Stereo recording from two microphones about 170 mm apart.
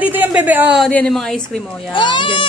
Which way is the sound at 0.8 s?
5° left (ahead or behind).